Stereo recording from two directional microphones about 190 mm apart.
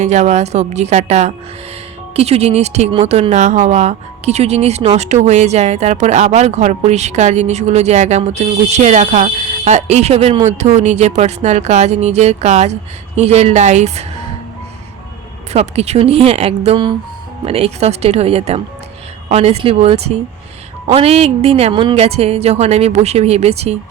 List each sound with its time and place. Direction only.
0.0 s speech: 35° right (ahead or behind)
15.5 s speech: 35° right (ahead or behind)